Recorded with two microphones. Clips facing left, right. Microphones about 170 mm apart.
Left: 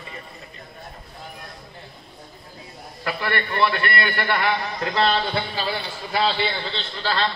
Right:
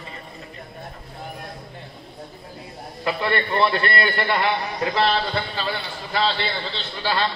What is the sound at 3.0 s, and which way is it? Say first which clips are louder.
A man's voice: right 3 dB; 25° right (ahead or behind).